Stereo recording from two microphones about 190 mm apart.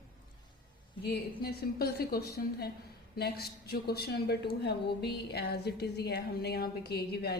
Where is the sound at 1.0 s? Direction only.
55° left (ahead or behind).